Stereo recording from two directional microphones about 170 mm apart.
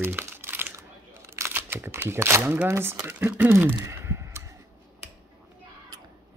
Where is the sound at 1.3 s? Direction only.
15° right (ahead or behind).